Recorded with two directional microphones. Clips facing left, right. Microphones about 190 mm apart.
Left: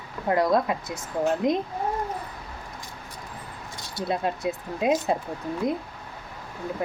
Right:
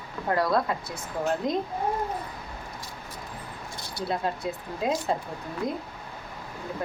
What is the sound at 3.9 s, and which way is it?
Speech, 20° left (ahead or behind).